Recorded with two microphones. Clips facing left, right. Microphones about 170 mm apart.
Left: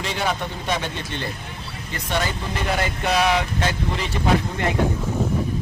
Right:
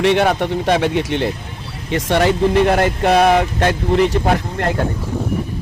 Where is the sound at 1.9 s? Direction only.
80° right.